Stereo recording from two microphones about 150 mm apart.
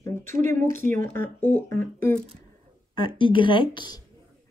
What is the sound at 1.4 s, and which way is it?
Speech, 15° left (ahead or behind).